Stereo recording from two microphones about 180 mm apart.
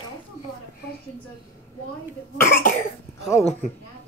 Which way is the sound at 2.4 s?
50° left (ahead or behind).